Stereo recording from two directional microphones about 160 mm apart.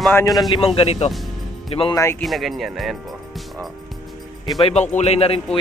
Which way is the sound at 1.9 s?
20° left (ahead or behind).